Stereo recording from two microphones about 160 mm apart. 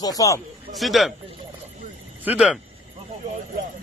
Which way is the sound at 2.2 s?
10° right (ahead or behind).